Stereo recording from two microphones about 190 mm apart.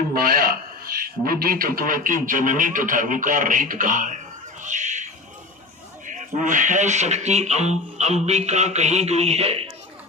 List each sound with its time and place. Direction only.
0.1 s a man's voice: 50° right (ahead or behind)
4.6 s a sound: 40° right (ahead or behind)
6.1 s speech: 40° right (ahead or behind)